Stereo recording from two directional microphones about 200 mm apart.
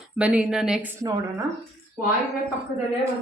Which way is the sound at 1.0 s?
15° right (ahead or behind).